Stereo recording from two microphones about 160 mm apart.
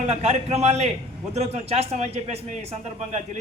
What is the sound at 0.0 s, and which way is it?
Speech, 45° right (ahead or behind).